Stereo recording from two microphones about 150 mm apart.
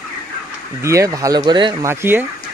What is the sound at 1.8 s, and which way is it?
Speech, 15° right (ahead or behind).